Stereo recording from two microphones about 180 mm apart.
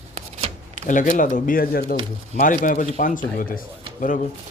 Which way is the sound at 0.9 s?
45° left (ahead or behind).